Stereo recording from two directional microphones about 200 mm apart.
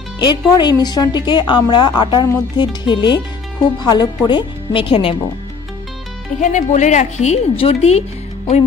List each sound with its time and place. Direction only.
0.2 s a woman's voice: 20° left (ahead or behind)
6.4 s a woman's voice: 40° left (ahead or behind)